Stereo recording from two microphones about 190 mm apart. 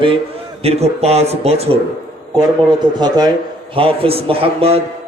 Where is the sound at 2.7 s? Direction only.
20° right (ahead or behind).